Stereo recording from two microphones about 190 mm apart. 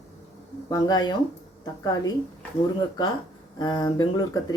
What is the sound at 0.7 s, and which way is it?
Speech, 20° left (ahead or behind).